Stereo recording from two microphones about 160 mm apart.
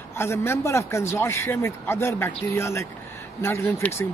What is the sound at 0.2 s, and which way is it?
A man's voice, 15° left (ahead or behind).